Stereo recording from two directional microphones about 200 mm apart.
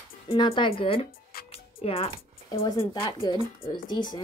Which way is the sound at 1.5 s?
30° left (ahead or behind).